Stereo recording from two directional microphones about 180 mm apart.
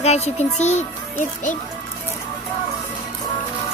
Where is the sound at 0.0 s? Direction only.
35° left (ahead or behind).